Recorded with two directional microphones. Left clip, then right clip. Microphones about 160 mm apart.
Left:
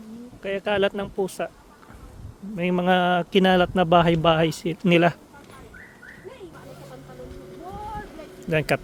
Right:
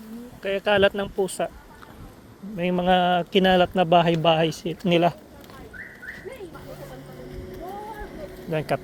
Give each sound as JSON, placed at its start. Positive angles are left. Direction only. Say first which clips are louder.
{"t": 0.4, "sound": "speech", "louder": "right 3 dB", "side_deg": 15}
{"t": 2.6, "sound": "a man's voice", "louder": "right 1 dB", "side_deg": 45}
{"t": 8.4, "sound": "speech", "louder": "left 3 dB", "side_deg": 90}